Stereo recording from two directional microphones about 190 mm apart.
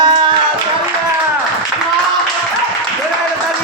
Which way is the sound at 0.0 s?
25° right (ahead or behind).